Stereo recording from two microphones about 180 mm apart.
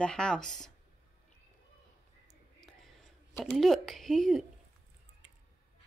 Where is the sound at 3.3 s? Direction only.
Centre (ahead or behind).